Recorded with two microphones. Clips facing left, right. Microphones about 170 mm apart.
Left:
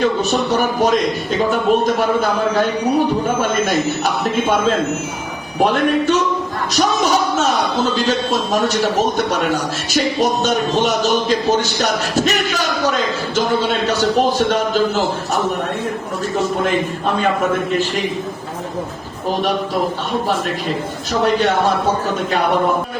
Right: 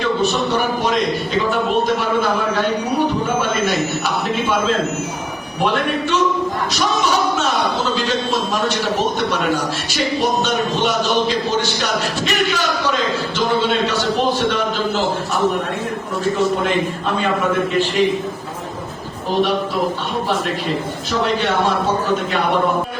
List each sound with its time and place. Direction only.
6.7 s speech: 45° left (ahead or behind)
13.8 s speech: 45° left (ahead or behind)
21.1 s speech: 45° left (ahead or behind)